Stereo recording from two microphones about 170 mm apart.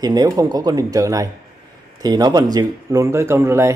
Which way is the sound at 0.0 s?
20° right (ahead or behind).